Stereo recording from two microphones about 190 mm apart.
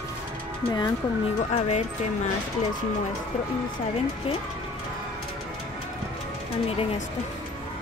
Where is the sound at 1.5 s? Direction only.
35° left (ahead or behind).